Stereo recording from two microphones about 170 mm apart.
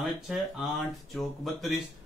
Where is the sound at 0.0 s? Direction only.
Centre (ahead or behind).